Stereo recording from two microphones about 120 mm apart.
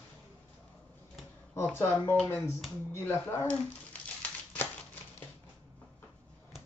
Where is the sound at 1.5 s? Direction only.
20° left (ahead or behind).